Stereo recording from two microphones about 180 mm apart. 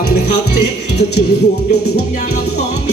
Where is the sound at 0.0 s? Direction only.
60° left (ahead or behind).